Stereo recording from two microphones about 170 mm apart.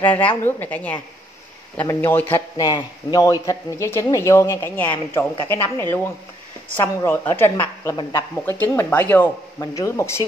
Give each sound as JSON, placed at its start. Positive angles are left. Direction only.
{"t": 0.0, "sound": "a woman's voice", "side_deg": 10}